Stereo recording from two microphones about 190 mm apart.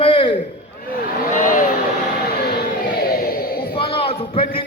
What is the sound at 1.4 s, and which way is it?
Speech, 45° left (ahead or behind).